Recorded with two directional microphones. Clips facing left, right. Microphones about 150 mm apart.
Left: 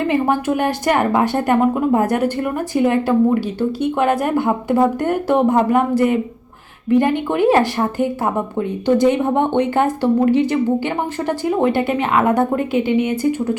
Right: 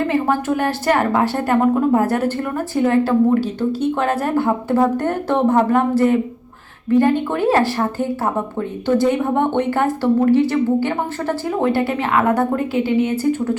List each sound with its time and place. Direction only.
0.1 s speech: 15° left (ahead or behind)